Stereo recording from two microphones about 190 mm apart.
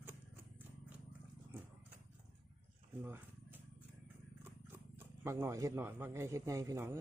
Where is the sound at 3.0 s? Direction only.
10° right (ahead or behind).